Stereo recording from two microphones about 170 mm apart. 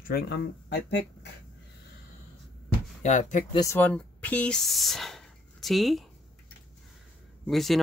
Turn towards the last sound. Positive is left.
turn(degrees=0)  # may be behind; listen again after turning